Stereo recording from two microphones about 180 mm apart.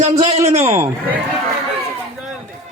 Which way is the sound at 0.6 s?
15° right (ahead or behind).